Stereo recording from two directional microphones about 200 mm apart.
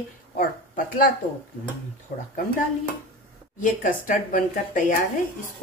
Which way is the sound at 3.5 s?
40° left (ahead or behind).